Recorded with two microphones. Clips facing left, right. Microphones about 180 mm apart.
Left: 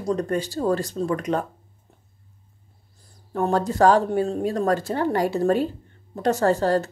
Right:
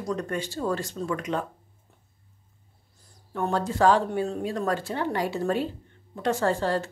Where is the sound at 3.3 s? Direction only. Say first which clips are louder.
Left 5 dB; 40° left (ahead or behind).